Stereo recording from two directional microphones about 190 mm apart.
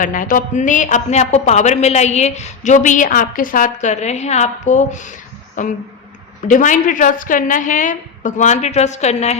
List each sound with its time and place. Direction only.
0.0 s a woman's voice: 45° left (ahead or behind)